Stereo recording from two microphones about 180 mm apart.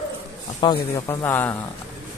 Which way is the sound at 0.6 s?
25° left (ahead or behind).